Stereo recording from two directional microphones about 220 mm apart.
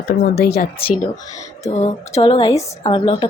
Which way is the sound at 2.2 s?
25° left (ahead or behind).